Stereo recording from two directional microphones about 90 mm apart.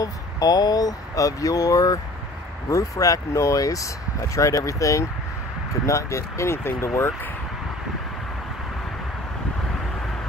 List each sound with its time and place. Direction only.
0.0 s speech: 45° left (ahead or behind); by 7.1 s 30° left (ahead or behind)